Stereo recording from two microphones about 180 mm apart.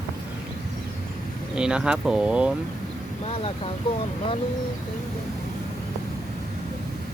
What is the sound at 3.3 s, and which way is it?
Speech, 35° left (ahead or behind).